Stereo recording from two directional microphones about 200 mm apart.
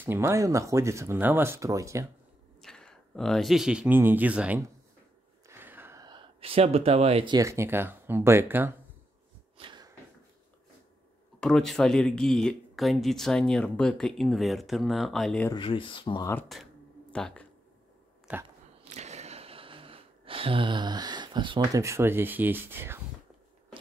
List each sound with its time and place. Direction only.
0.0 s speech: 10° right (ahead or behind)
2.6 s speech: 5° left (ahead or behind)
5.5 s gasp: 10° right (ahead or behind); by 7.3 s 30° right (ahead or behind)
7.3 s speech: 15° right (ahead or behind)
9.6 s a sound: 20° right (ahead or behind)
11.3 s speech: 5° left (ahead or behind)
15.5 s speech: 25° left (ahead or behind)
16.5 s speech: centre (ahead or behind)
18.9 s a sound: 35° right (ahead or behind); by 22.9 s 10° right (ahead or behind)